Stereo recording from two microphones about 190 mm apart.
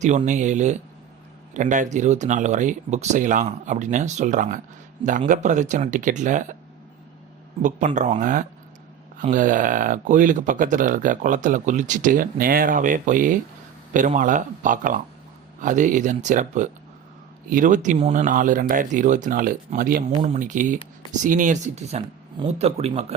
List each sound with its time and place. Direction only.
0.0 s speech: 40° right (ahead or behind)
7.6 s speech: 40° right (ahead or behind)
20.2 s speech: 40° right (ahead or behind)